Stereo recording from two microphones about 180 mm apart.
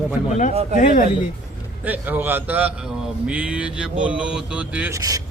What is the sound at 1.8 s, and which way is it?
Speech, 10° right (ahead or behind).